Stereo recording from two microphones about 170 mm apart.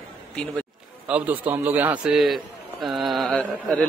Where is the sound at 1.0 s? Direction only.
10° right (ahead or behind).